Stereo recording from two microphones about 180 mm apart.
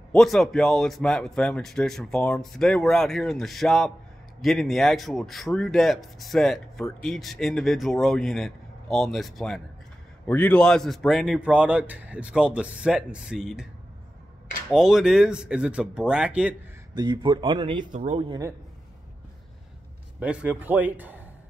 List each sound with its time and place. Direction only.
0.1 s speech: centre (ahead or behind)
14.7 s speech: 5° right (ahead or behind)
16.9 s speech: 25° right (ahead or behind)
17.9 s speech: 35° right (ahead or behind)
20.2 s a man's voice: 5° right (ahead or behind)